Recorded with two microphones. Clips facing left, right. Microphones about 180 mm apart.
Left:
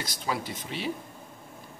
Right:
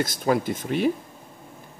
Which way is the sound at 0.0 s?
50° right (ahead or behind).